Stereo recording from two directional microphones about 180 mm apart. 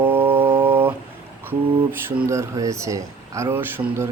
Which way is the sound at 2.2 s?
15° right (ahead or behind).